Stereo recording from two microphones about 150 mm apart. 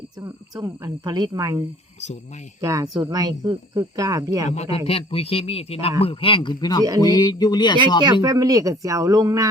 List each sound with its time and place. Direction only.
0.2 s speech: 25° right (ahead or behind)
4.4 s speech: 45° left (ahead or behind); by 7.8 s 30° left (ahead or behind)
8.0 s speech: 25° right (ahead or behind)